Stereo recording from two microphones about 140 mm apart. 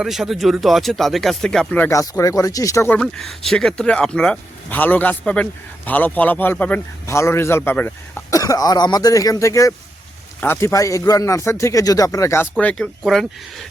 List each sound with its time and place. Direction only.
0.0 s speech: centre (ahead or behind)
1.9 s speech: 25° left (ahead or behind)
3.0 s speech: 5° left (ahead or behind)